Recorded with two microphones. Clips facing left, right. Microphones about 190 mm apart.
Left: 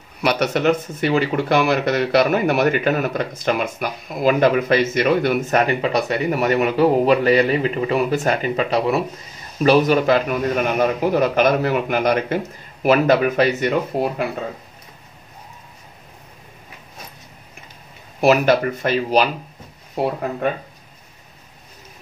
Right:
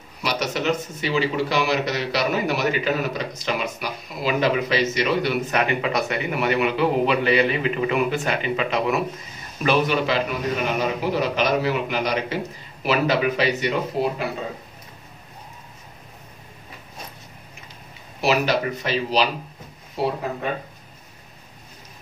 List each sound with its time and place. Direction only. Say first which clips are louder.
0.2 s speech: left 6 dB; 60° left (ahead or behind)
18.2 s speech: left 6 dB; 50° left (ahead or behind)